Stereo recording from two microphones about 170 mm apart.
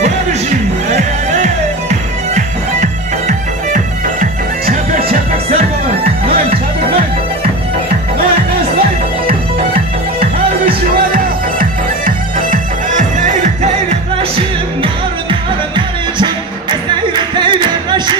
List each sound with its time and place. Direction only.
0.0 s music: 40° right (ahead or behind); by 6.6 s 65° right (ahead or behind)
10.2 s music: 30° right (ahead or behind)
12.4 s music: 50° right (ahead or behind)
14.8 s music: 30° right (ahead or behind)